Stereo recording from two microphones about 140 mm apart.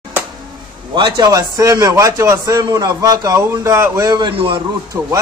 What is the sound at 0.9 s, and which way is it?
A man's voice, 35° right (ahead or behind).